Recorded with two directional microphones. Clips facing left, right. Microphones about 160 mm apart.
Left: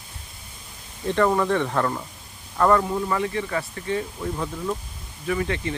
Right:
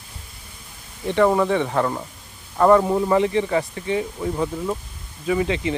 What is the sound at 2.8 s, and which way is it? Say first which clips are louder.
Speech: right 6 dB; 25° right (ahead or behind).